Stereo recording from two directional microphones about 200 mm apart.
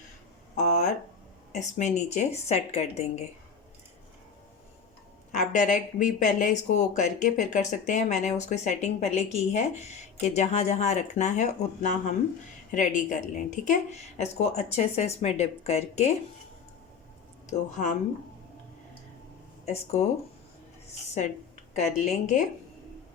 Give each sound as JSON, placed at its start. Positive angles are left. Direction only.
{"t": 0.5, "sound": "a sound", "side_deg": 35}
{"t": 1.5, "sound": "speech", "side_deg": 35}
{"t": 5.3, "sound": "speech", "side_deg": 35}
{"t": 17.5, "sound": "speech", "side_deg": 35}
{"t": 19.6, "sound": "speech", "side_deg": 35}
{"t": 21.2, "sound": "a sound", "side_deg": 35}
{"t": 22.0, "sound": "speech", "side_deg": 35}